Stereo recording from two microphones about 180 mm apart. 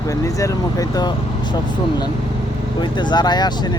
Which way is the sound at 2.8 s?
25° left (ahead or behind).